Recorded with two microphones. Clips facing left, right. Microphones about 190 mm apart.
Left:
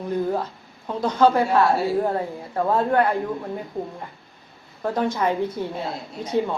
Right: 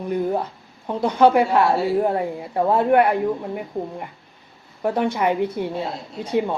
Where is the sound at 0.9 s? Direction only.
15° right (ahead or behind).